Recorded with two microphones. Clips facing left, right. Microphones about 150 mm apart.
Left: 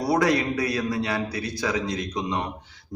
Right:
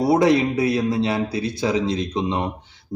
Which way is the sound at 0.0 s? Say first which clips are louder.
Right 5 dB; 25° right (ahead or behind).